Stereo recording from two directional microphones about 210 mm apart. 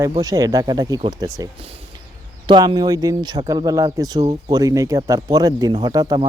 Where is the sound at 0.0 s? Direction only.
15° right (ahead or behind).